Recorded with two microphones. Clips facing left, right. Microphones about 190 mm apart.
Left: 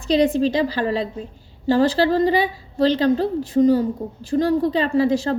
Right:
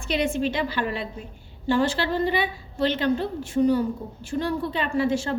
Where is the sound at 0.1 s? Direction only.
35° left (ahead or behind).